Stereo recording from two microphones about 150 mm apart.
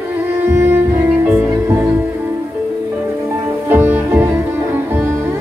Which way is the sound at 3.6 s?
10° right (ahead or behind).